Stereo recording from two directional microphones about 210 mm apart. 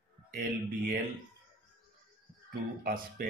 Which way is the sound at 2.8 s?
45° right (ahead or behind).